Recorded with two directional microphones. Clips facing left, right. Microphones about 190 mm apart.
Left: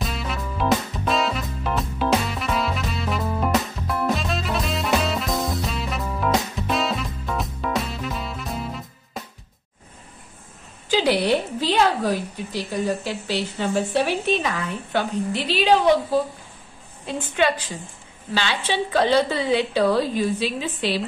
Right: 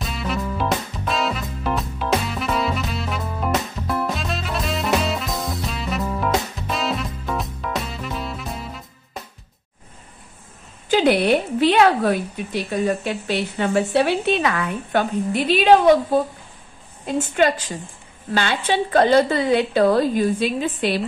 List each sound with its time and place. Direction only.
0.0 s music: centre (ahead or behind)
10.9 s a woman's voice: 55° right (ahead or behind)